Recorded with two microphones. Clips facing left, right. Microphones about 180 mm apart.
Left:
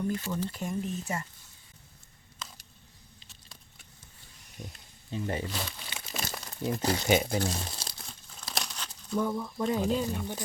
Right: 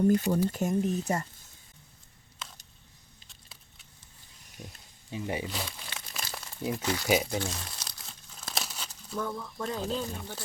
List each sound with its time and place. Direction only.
0.0 s speech: 40° right (ahead or behind)
4.6 s a sound: centre (ahead or behind)
5.1 s speech: 10° right (ahead or behind)
6.3 s crumpling: 5° right (ahead or behind)
6.8 s speech: 30° left (ahead or behind)
8.0 s crumpling: 5° right (ahead or behind)
9.1 s speech: 15° left (ahead or behind)